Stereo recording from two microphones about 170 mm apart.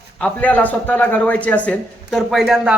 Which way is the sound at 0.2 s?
10° left (ahead or behind).